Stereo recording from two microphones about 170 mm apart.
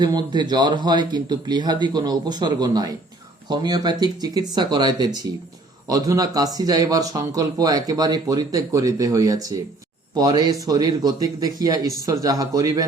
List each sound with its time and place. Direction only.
0.0 s speech: 25° right (ahead or behind)